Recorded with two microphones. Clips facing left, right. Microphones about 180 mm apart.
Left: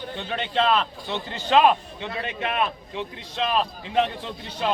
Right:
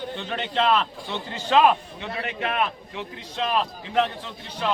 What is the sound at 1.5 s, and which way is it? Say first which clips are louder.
Speech: even; 20° left (ahead or behind).